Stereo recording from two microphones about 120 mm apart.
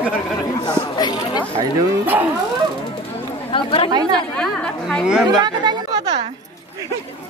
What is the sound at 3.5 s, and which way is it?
Speech, 45° left (ahead or behind).